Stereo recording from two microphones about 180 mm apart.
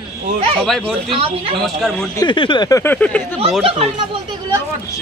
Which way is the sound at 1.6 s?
Centre (ahead or behind).